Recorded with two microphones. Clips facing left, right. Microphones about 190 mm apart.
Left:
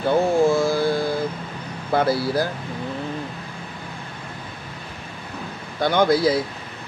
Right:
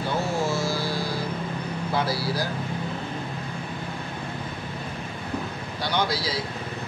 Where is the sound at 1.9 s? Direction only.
55° left (ahead or behind).